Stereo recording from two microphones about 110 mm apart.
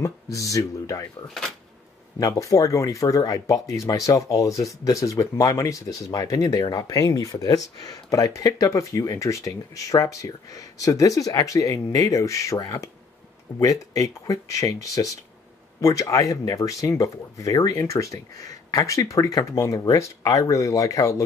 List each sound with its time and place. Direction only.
0.0 s speech: 30° left (ahead or behind)
1.2 s speech: 5° left (ahead or behind)
2.1 s speech: 30° left (ahead or behind)